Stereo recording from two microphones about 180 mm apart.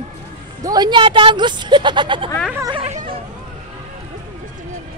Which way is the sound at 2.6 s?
30° right (ahead or behind).